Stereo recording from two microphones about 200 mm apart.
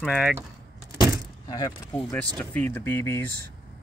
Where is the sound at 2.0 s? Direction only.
5° left (ahead or behind).